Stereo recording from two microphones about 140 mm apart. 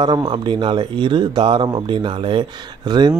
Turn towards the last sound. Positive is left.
turn(degrees=-30)  # may be behind; listen again after turning